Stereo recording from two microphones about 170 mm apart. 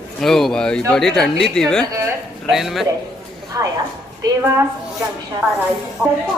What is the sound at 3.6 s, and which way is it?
Speech, 15° right (ahead or behind).